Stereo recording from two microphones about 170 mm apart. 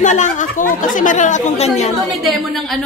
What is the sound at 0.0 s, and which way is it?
Speech, 45° left (ahead or behind).